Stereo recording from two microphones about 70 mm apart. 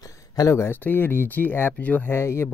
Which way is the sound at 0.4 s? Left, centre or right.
Left.